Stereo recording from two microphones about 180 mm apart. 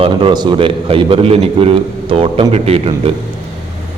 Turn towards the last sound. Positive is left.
turn(degrees=-35)  # may be behind; listen again after turning